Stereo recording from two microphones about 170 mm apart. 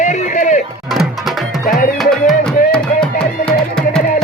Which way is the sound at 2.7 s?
5° left (ahead or behind).